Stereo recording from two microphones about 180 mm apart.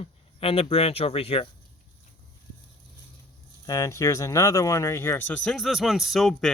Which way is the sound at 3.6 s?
20° left (ahead or behind).